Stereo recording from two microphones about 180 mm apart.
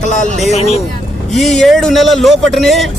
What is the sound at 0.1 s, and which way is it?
Speech, 45° left (ahead or behind).